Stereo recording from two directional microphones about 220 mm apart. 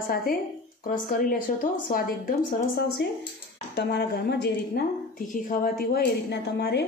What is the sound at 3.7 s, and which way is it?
A woman's voice, 45° left (ahead or behind).